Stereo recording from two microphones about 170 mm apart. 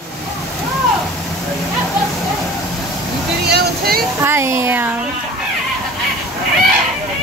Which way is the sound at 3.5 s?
70° right (ahead or behind).